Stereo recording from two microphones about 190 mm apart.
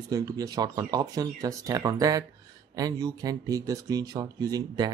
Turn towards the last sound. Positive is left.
turn(degrees=-20)  # may be behind; listen again after turning